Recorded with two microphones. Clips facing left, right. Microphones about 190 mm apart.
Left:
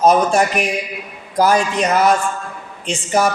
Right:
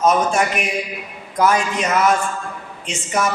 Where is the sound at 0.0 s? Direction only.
35° left (ahead or behind).